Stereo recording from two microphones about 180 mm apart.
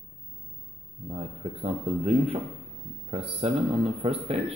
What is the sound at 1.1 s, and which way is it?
Speech, 35° right (ahead or behind).